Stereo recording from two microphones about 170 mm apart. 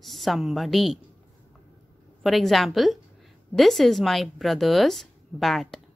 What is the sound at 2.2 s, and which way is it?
Speech, centre (ahead or behind).